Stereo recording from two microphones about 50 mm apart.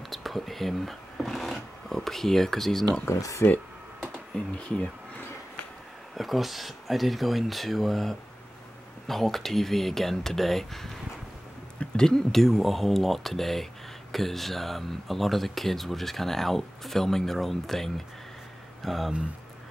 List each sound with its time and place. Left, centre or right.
0.1 s speech: centre
3.1 s speech: left
4.6 s speech: centre
6.1 s speech: centre